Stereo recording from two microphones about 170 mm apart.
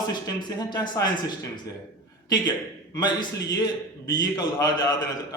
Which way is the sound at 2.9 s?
25° left (ahead or behind).